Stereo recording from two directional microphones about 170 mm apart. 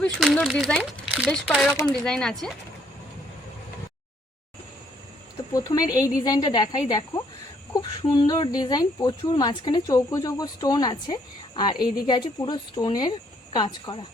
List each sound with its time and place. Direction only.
0.2 s speech: centre (ahead or behind)
5.5 s speech: 20° left (ahead or behind)